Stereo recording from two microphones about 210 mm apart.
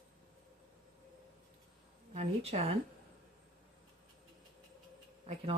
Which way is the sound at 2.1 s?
30° right (ahead or behind).